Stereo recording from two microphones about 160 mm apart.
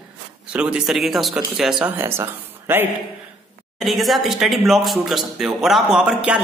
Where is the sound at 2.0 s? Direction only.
15° right (ahead or behind).